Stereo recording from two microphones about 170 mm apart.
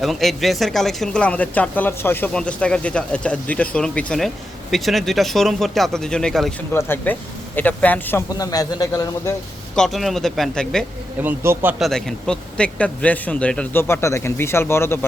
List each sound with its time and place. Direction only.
0.0 s speech: centre (ahead or behind)
6.7 s speech: 15° left (ahead or behind)
8.3 s a man's voice: 20° left (ahead or behind)
9.7 s speech: centre (ahead or behind)
11.2 s speech: 10° right (ahead or behind)
11.8 s speech: centre (ahead or behind)